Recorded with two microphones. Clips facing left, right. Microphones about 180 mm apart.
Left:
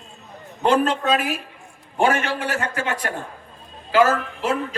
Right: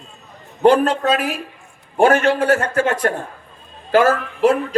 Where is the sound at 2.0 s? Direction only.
50° right (ahead or behind).